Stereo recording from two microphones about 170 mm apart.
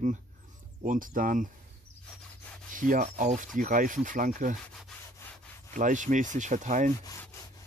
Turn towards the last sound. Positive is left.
turn(degrees=15)  # may be behind; listen again after turning